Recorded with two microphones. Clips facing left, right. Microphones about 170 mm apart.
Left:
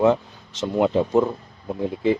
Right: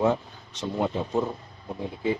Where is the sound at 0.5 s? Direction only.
90° left.